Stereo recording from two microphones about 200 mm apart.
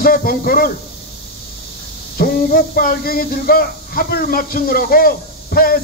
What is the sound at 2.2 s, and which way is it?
Speech, 45° left (ahead or behind).